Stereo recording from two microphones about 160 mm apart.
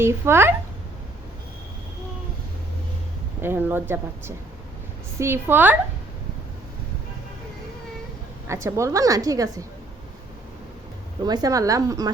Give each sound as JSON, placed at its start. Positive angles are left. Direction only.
{"t": 0.0, "sound": "a woman's voice", "side_deg": -15}
{"t": 3.4, "sound": "a woman's voice", "side_deg": -15}
{"t": 8.4, "sound": "a woman's voice", "side_deg": -20}
{"t": 11.2, "sound": "a woman's voice", "side_deg": -25}